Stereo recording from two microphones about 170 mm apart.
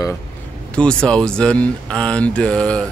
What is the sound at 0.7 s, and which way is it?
Speech, 5° left (ahead or behind).